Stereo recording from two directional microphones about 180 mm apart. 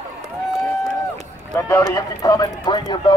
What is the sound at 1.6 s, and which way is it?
Speech, 15° left (ahead or behind).